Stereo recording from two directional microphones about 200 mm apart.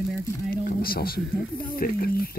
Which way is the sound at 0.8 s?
50° left (ahead or behind).